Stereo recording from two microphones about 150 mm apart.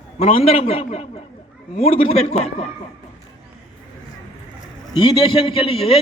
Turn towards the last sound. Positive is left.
turn(degrees=40)  # may be behind; listen again after turning